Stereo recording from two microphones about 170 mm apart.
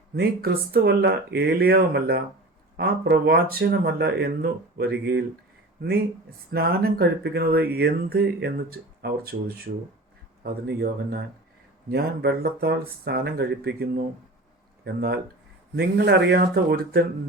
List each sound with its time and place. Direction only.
0.2 s speech: 65° right (ahead or behind)
10.4 s speech: 65° right (ahead or behind)
15.7 s speech: 75° right (ahead or behind)